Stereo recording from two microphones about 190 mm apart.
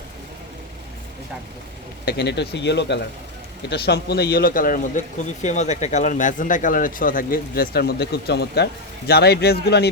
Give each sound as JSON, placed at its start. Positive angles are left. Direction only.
{"t": 2.0, "sound": "a man's voice", "side_deg": 60}